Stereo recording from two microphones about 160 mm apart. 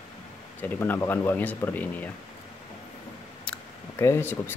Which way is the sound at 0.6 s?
15° left (ahead or behind).